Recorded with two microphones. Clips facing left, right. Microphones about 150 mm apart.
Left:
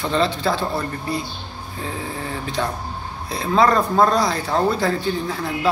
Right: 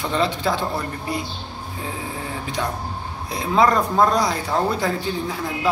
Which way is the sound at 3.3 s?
15° right (ahead or behind).